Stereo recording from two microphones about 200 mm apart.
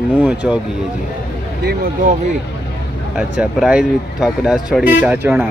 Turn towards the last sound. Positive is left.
turn(degrees=-10)  # may be behind; listen again after turning